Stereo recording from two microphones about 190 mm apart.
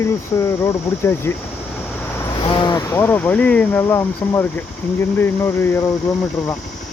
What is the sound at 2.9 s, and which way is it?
Speech, 10° left (ahead or behind).